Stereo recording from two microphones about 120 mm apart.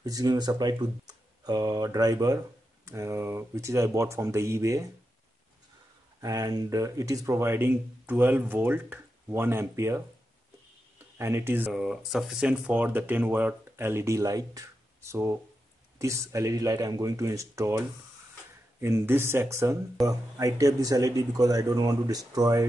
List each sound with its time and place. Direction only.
0.0 s speech: 30° right (ahead or behind)
6.2 s speech: 30° right (ahead or behind)
11.1 s speech: 20° right (ahead or behind)